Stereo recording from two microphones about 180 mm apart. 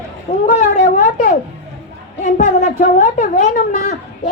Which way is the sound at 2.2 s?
45° left (ahead or behind).